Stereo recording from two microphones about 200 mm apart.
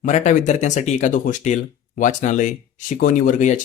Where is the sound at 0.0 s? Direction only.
40° left (ahead or behind).